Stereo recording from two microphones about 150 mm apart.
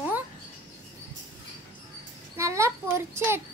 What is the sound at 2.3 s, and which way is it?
A child's voice, 20° right (ahead or behind).